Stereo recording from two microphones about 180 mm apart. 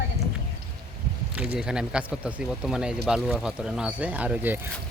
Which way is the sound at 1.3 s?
5° right (ahead or behind).